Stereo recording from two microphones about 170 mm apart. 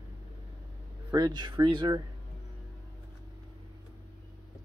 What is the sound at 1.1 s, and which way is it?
Speech, 25° right (ahead or behind).